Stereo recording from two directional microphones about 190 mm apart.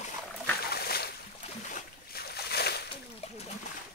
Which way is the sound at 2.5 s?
55° left (ahead or behind).